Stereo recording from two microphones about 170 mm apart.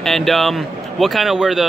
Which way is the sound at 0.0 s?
Centre (ahead or behind).